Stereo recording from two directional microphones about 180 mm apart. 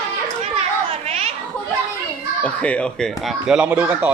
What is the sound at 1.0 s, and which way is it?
Children playing, 35° right (ahead or behind).